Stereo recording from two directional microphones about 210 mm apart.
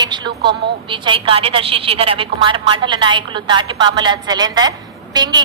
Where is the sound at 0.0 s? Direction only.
20° right (ahead or behind).